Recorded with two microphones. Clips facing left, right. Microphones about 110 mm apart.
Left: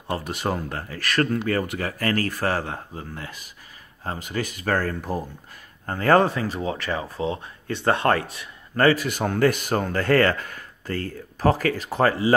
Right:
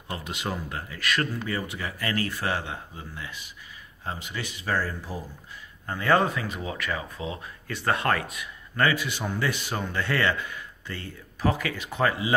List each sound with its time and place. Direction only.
0.1 s speech: 45° left (ahead or behind)